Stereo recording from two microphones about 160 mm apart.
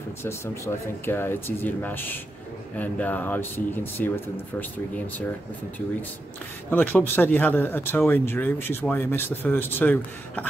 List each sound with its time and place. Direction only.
1.0 s speech: 15° left (ahead or behind)
6.7 s speech: 10° left (ahead or behind)